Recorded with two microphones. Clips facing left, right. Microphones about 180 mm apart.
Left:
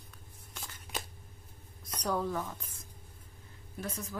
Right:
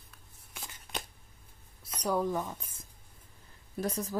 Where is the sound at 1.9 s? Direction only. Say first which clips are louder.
Right 3 dB; 10° right (ahead or behind).